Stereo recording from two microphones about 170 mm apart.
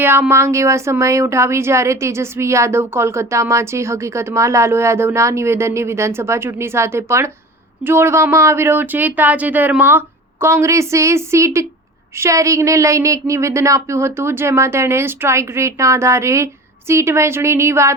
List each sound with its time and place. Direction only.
0.0 s speech: 15° right (ahead or behind)